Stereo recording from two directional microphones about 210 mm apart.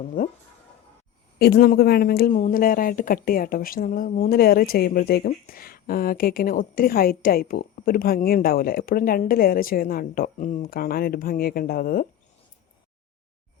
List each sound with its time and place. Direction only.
0.2 s speech: 40° left (ahead or behind)
1.4 s a woman's voice: 50° left (ahead or behind)